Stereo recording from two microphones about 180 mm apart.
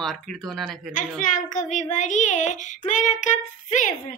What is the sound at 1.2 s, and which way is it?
Child singing, 45° left (ahead or behind).